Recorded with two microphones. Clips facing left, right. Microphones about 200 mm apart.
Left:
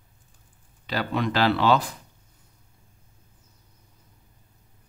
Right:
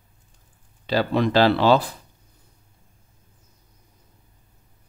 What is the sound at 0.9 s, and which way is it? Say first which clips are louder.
Speech: right 6 dB; 30° right (ahead or behind).